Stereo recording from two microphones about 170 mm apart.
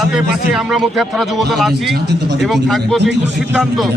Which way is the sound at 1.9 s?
80° right.